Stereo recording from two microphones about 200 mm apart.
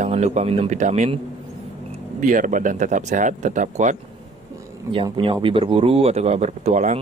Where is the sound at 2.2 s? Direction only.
40° right (ahead or behind).